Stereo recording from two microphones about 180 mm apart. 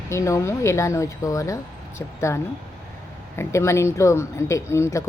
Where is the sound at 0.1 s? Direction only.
15° left (ahead or behind).